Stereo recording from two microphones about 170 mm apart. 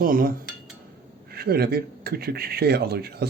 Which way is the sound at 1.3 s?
65° right (ahead or behind).